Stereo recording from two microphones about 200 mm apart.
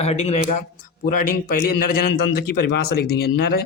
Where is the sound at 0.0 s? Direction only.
30° left (ahead or behind).